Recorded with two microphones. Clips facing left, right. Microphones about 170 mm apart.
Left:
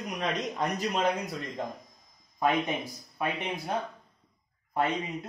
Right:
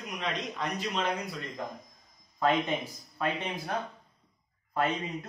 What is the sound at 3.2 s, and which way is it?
Speech, 15° left (ahead or behind).